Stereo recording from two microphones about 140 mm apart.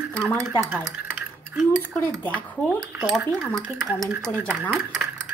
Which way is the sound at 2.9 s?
10° right (ahead or behind).